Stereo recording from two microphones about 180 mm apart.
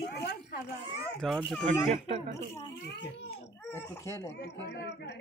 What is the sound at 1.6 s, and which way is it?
Speech, 30° right (ahead or behind).